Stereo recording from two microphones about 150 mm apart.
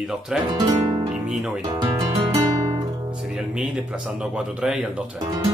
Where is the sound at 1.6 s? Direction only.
25° right (ahead or behind).